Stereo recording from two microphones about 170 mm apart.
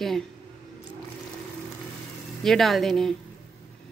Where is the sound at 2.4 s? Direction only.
Centre (ahead or behind).